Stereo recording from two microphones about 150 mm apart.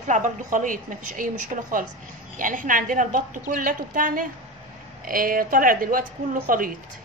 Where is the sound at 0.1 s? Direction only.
60° right (ahead or behind).